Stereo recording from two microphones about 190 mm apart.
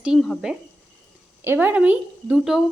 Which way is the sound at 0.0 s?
Centre (ahead or behind).